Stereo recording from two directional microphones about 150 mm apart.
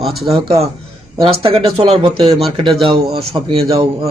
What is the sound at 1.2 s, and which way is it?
Speech, 40° right (ahead or behind).